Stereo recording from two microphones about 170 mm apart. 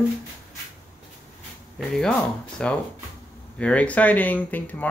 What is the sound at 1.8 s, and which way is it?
Speech, centre (ahead or behind).